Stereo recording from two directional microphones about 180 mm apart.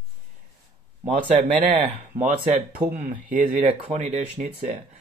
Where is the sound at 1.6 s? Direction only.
45° right (ahead or behind).